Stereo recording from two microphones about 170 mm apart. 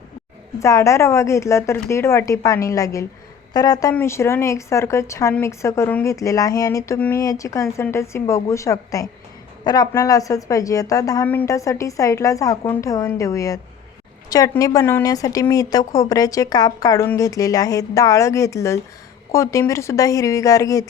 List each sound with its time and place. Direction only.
0.6 s a woman's voice: 15° left (ahead or behind)